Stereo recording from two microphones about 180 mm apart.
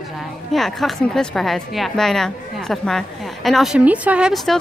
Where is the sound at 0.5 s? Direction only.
Centre (ahead or behind).